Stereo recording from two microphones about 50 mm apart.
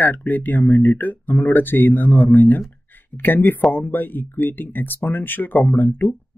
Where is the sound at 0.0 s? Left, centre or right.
Left.